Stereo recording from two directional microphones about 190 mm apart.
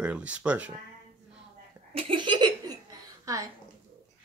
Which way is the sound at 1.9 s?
30° right (ahead or behind).